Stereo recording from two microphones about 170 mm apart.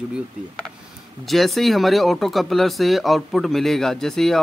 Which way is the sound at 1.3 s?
Centre (ahead or behind).